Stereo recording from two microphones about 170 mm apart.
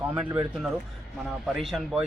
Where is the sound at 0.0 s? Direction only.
10° right (ahead or behind).